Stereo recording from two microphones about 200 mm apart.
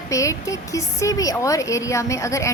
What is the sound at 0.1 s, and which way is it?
A woman's voice, 15° left (ahead or behind).